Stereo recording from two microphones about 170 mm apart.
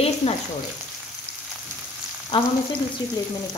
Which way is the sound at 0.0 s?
35° left (ahead or behind).